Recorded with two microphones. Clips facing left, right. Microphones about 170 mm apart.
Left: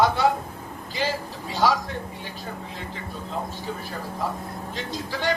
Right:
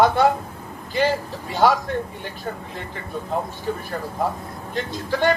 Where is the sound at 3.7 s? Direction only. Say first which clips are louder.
Right 5 dB; 55° right (ahead or behind).